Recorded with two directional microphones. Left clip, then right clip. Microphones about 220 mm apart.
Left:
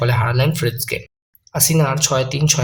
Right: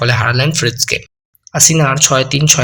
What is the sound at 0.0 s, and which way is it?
Speech, 15° right (ahead or behind).